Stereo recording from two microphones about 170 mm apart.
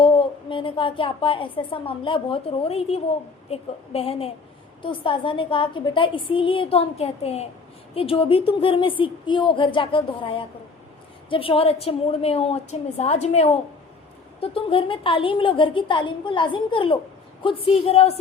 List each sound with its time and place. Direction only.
0.0 s a woman's voice: 30° left (ahead or behind)